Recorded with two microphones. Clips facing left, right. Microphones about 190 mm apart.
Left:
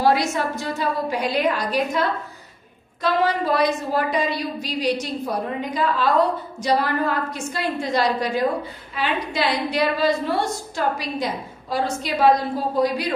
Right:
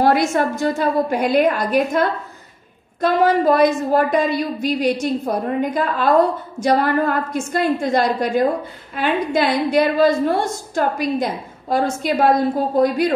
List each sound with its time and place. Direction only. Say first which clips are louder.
0.0 s a woman's voice: right 4 dB; 55° right (ahead or behind)